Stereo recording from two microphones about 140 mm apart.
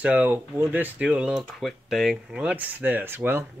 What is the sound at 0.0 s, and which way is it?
Speech, 15° right (ahead or behind).